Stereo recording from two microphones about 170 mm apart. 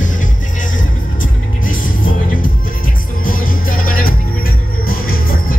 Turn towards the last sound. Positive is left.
turn(degrees=60)  # may be behind; listen again after turning